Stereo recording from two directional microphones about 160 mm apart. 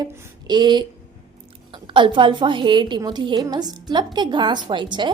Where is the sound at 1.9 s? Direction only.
30° right (ahead or behind).